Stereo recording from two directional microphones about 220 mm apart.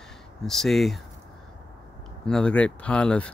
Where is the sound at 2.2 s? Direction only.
5° left (ahead or behind).